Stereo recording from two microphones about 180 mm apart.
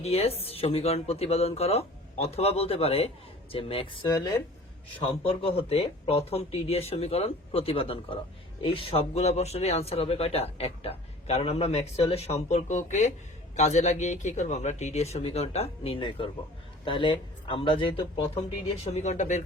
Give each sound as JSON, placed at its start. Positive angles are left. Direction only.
{"t": 0.0, "sound": "speech", "side_deg": 35}